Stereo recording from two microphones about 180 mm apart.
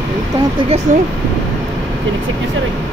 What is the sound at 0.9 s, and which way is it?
Speech, 45° right (ahead or behind).